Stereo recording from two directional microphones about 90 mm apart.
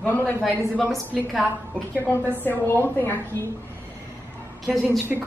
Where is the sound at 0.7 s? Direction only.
Centre (ahead or behind).